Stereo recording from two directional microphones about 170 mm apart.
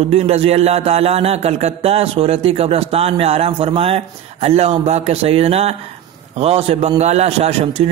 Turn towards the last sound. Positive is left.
turn(degrees=-35)  # may be behind; listen again after turning